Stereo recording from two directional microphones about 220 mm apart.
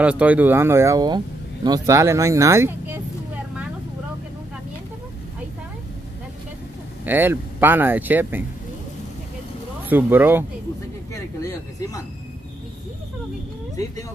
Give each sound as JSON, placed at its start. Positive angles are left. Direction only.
{"t": 0.0, "sound": "speech", "side_deg": -5}
{"t": 7.1, "sound": "speech", "side_deg": -10}
{"t": 9.8, "sound": "speech", "side_deg": -10}